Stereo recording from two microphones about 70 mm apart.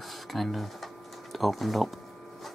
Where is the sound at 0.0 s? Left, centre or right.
Centre.